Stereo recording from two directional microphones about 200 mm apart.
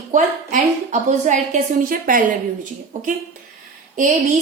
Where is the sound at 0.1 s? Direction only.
40° right (ahead or behind).